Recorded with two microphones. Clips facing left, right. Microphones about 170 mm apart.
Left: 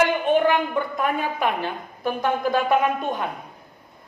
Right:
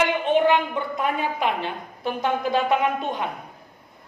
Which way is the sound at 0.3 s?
20° right (ahead or behind).